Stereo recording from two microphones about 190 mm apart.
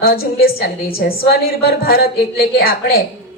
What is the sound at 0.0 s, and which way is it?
A woman's voice, 55° left (ahead or behind).